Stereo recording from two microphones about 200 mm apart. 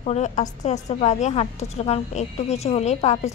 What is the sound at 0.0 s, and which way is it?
A woman's voice, 35° left (ahead or behind).